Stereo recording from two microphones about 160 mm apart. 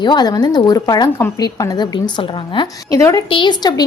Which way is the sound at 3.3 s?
30° left (ahead or behind).